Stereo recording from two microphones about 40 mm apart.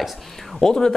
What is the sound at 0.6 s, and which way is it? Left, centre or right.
Speech, centre.